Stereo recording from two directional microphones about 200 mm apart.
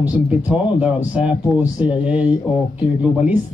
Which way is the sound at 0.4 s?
5° right (ahead or behind).